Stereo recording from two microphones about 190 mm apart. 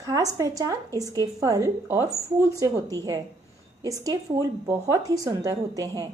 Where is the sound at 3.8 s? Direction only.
15° right (ahead or behind).